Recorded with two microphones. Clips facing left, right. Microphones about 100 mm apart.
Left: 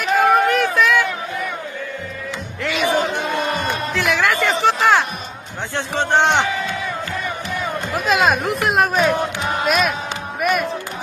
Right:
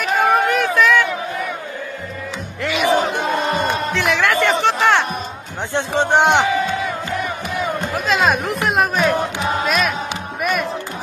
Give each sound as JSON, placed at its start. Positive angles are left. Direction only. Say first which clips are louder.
{"t": 0.0, "sound": "a sound", "louder": "left 1 dB", "side_deg": 0}
{"t": 2.6, "sound": "music", "louder": "right 1 dB", "side_deg": -10}
{"t": 3.2, "sound": "crowd", "louder": "right 2 dB", "side_deg": -20}
{"t": 3.9, "sound": "music", "louder": "left 1 dB", "side_deg": 0}
{"t": 5.7, "sound": "speech", "louder": "right 2 dB", "side_deg": -20}
{"t": 7.9, "sound": "speech", "louder": "left 2 dB", "side_deg": 0}
{"t": 10.4, "sound": "crowd", "louder": "left 2 dB", "side_deg": 0}